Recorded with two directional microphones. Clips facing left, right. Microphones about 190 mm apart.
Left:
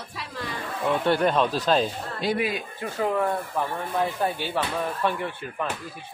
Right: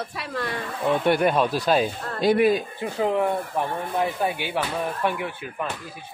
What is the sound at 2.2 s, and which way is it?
Speech, 50° right (ahead or behind).